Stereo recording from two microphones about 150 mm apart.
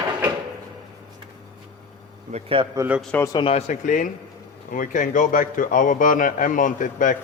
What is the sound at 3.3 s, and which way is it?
Speech, 40° left (ahead or behind).